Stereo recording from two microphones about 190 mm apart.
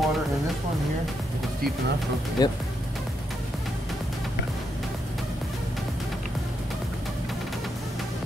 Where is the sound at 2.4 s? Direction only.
20° left (ahead or behind).